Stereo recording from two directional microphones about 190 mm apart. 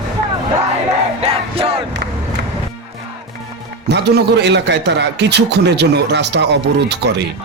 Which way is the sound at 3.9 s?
60° right (ahead or behind).